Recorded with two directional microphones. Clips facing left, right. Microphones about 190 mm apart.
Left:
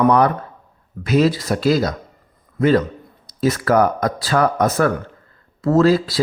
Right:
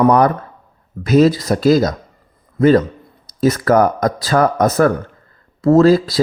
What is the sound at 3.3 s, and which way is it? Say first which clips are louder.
A man's voice: right 3 dB; 40° right (ahead or behind).